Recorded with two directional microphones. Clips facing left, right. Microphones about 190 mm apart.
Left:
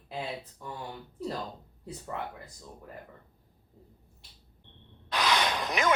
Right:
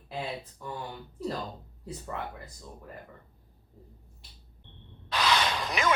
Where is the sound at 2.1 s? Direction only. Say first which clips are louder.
Left 1 dB; 20° left (ahead or behind).